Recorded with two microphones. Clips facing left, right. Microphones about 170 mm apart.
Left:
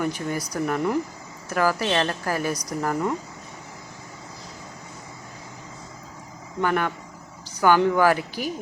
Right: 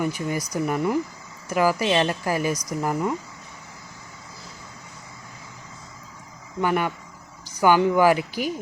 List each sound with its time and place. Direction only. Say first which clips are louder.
0.0 s a woman's voice: right 1 dB; 10° right (ahead or behind)
6.6 s a woman's voice: right 1 dB; 10° right (ahead or behind)